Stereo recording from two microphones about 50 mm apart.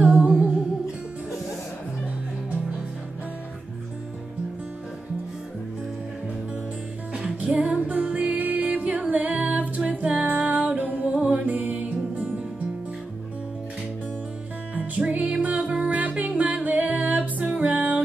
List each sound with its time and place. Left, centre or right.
0.0 s music: right
7.4 s music: right
14.8 s music: right